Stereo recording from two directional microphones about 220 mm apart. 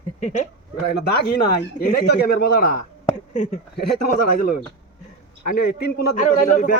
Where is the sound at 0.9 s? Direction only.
45° left (ahead or behind).